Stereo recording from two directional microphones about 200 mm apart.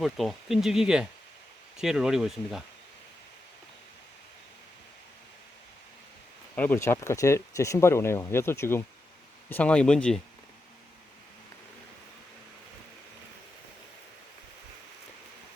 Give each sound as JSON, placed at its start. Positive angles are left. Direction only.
{"t": 0.0, "sound": "speech", "side_deg": 0}
{"t": 6.6, "sound": "speech", "side_deg": 10}